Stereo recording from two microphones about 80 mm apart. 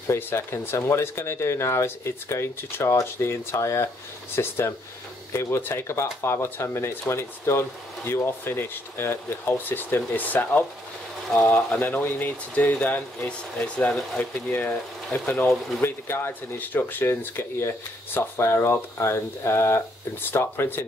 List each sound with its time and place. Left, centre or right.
0.1 s speech: left
15.0 s speech: centre
15.8 s speech: left